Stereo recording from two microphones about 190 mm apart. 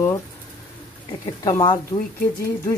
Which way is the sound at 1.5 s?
20° left (ahead or behind).